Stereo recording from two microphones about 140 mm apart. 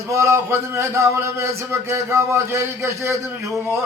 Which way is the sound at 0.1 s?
20° right (ahead or behind).